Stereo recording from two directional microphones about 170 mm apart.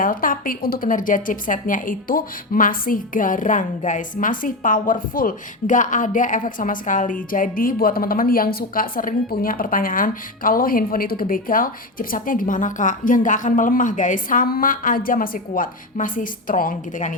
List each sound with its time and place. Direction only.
0.0 s a woman's voice: 55° left (ahead or behind)